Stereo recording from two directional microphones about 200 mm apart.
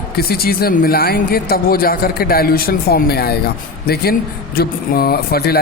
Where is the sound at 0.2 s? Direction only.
50° left (ahead or behind).